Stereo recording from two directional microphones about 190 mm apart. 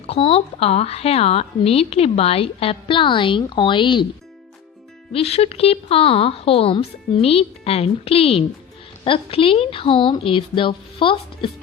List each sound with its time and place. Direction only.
0.1 s a woman's voice: 30° left (ahead or behind)
5.1 s a woman's voice: 30° left (ahead or behind)